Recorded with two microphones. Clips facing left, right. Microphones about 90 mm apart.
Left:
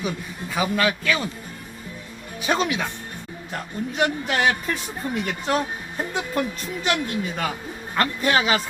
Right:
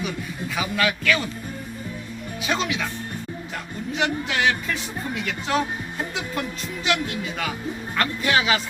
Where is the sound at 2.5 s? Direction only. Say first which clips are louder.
Left 3 dB; 40° left (ahead or behind).